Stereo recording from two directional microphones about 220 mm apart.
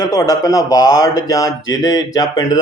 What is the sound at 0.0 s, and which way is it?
Speech, 15° left (ahead or behind).